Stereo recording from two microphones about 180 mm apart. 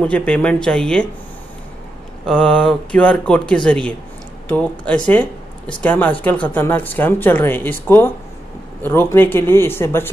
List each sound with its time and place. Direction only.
0.0 s speech: 5° left (ahead or behind)
2.2 s speech: 5° left (ahead or behind)